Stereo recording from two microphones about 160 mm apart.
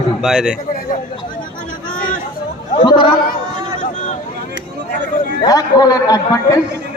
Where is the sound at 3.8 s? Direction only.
50° left (ahead or behind).